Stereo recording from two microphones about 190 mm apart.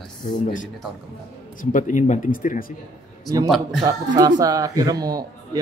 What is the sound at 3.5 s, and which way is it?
Speech, centre (ahead or behind).